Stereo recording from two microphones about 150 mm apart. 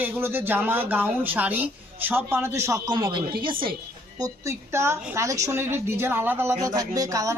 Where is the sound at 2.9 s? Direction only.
30° right (ahead or behind).